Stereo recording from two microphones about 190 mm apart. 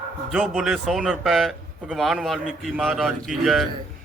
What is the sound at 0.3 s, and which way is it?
A man's voice, centre (ahead or behind).